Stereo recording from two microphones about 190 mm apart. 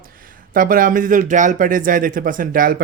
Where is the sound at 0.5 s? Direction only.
45° right (ahead or behind).